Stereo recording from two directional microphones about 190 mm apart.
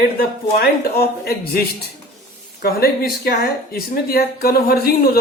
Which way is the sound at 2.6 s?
55° left (ahead or behind).